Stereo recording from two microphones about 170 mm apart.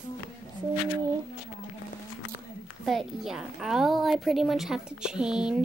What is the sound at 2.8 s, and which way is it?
A woman's voice, centre (ahead or behind).